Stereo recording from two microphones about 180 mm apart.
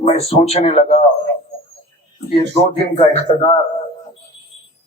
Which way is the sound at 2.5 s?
35° left (ahead or behind).